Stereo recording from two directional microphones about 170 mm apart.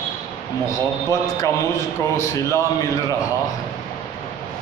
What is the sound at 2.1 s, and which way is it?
Mantra, 15° left (ahead or behind).